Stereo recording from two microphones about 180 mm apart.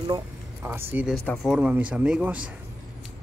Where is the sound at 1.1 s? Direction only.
10° left (ahead or behind).